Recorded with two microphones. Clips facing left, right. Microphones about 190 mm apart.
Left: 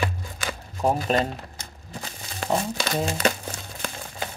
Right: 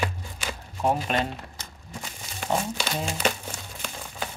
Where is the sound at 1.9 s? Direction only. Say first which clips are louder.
Left 2 dB; 35° left (ahead or behind).